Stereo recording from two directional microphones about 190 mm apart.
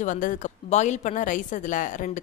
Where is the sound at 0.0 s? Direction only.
45° left (ahead or behind).